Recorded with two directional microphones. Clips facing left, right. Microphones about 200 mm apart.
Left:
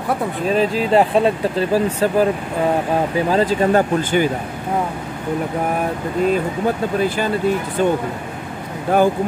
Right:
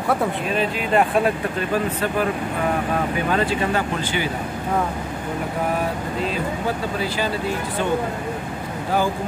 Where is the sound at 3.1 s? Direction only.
35° left (ahead or behind).